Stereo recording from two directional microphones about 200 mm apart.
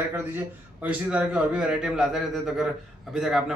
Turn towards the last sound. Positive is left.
turn(degrees=0)  # may be behind; listen again after turning